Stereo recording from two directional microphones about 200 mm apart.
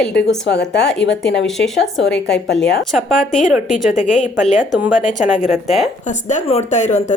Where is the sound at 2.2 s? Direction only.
60° left (ahead or behind).